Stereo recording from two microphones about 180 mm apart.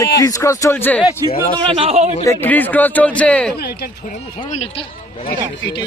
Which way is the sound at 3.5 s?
65° left (ahead or behind).